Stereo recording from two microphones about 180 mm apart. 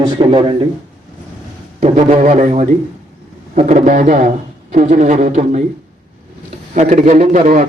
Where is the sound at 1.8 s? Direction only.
40° right (ahead or behind).